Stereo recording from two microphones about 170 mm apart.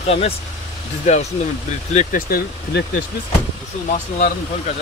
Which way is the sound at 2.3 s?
60° left (ahead or behind).